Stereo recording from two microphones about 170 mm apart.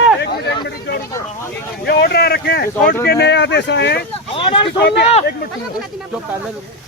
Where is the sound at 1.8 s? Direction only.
75° left (ahead or behind).